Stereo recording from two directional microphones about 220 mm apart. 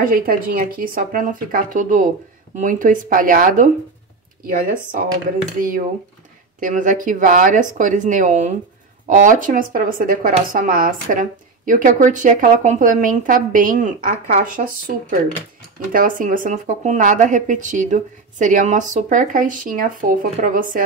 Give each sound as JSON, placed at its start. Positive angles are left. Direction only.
{"t": 0.0, "sound": "a woman's voice", "side_deg": -40}
{"t": 6.6, "sound": "a woman's voice", "side_deg": -35}